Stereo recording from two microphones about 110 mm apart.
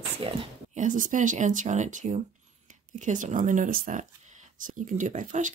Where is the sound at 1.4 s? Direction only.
90° right.